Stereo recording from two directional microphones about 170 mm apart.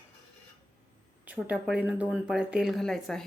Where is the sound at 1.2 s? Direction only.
10° right (ahead or behind).